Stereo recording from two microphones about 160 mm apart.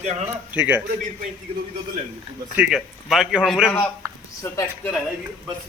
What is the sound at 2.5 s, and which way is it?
A man's voice, 5° right (ahead or behind).